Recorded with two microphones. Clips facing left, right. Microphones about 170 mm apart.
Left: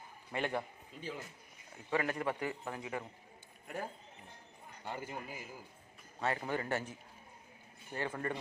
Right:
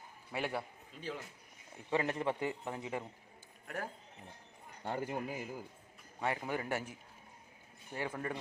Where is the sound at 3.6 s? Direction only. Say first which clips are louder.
Even; 10° left (ahead or behind).